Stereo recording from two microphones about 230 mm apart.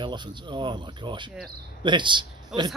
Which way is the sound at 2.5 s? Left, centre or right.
Centre.